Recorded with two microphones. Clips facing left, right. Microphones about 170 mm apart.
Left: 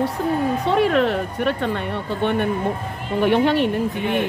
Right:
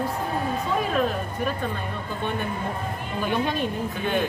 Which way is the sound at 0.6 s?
70° left (ahead or behind).